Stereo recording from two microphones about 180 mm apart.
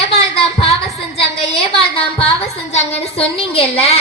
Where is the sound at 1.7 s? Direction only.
30° left (ahead or behind).